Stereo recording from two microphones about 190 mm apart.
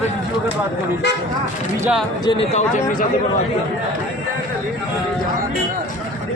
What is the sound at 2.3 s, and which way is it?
Speech, 35° left (ahead or behind).